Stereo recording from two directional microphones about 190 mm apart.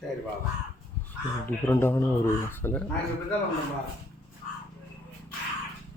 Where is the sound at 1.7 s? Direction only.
15° left (ahead or behind).